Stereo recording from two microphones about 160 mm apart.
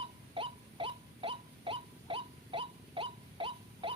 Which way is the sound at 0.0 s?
35° right (ahead or behind).